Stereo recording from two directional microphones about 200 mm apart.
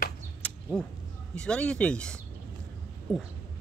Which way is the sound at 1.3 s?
5° left (ahead or behind).